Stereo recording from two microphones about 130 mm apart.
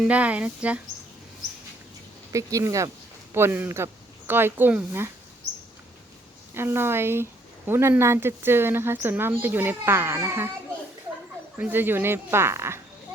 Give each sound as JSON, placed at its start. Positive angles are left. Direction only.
{"t": 0.0, "sound": "speech", "side_deg": -10}
{"t": 2.3, "sound": "speech", "side_deg": -25}
{"t": 6.5, "sound": "speech", "side_deg": -20}
{"t": 11.5, "sound": "speech", "side_deg": -15}